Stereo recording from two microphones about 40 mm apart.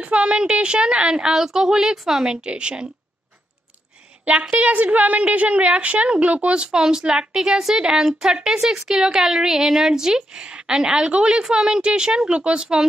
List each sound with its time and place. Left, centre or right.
0.0 s a woman's voice: right; by 2.2 s centre
2.2 s a woman's voice: right
4.2 s a woman's voice: right